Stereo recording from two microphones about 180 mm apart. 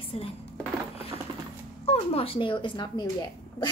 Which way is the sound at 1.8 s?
35° left (ahead or behind).